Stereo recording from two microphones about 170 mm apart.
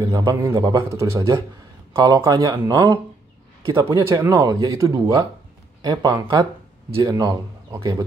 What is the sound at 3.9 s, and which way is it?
A man's voice, 15° right (ahead or behind).